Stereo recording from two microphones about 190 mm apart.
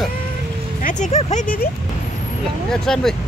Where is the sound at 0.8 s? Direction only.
35° left (ahead or behind).